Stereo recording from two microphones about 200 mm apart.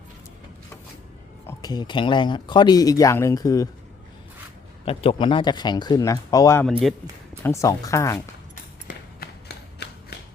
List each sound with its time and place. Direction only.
1.5 s speech: 20° left (ahead or behind)
4.9 s speech: 30° left (ahead or behind)
9.2 s a sound: 50° left (ahead or behind)